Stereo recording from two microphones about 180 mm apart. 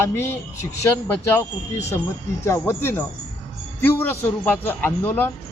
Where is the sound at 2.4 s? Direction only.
15° left (ahead or behind).